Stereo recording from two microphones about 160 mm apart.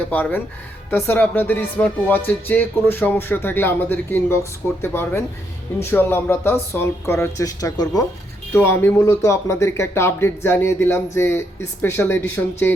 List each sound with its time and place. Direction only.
0.1 s speech: 10° left (ahead or behind)